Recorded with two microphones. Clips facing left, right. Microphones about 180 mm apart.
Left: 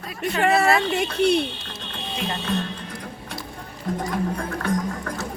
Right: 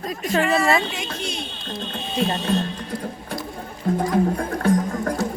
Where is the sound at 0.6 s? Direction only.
65° left (ahead or behind).